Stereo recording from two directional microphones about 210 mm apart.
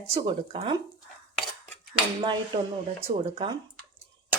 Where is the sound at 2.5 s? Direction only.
20° right (ahead or behind).